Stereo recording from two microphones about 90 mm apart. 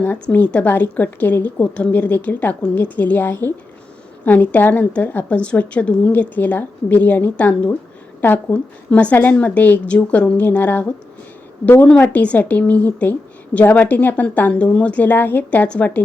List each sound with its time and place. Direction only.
0.0 s a woman's voice: 20° left (ahead or behind)
11.9 s a woman's voice: 20° left (ahead or behind)